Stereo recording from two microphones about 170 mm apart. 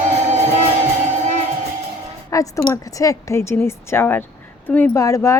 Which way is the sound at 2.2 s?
20° left (ahead or behind).